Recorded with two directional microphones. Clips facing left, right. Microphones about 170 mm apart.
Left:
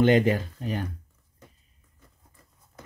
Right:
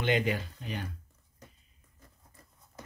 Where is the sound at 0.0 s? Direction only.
45° left (ahead or behind).